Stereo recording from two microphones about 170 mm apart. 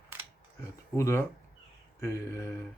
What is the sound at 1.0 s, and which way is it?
Speech, 15° left (ahead or behind).